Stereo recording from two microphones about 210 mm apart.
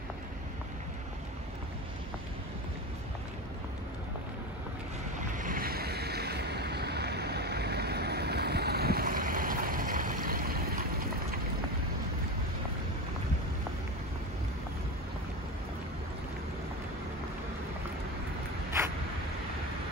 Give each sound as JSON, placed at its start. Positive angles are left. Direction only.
{"t": 5.3, "sound": "boat", "side_deg": -40}